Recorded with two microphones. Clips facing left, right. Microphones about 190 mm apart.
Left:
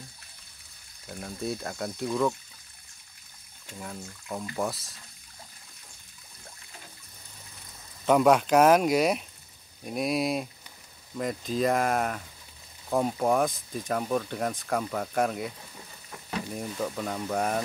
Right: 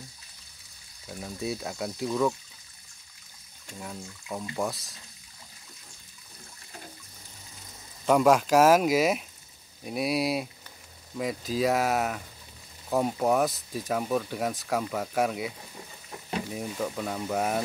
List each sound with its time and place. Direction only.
1.0 s speech: centre (ahead or behind)
3.8 s speech: centre (ahead or behind)
8.1 s speech: centre (ahead or behind)